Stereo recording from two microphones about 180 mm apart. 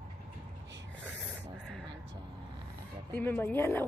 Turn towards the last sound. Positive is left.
turn(degrees=10)  # may be behind; listen again after turning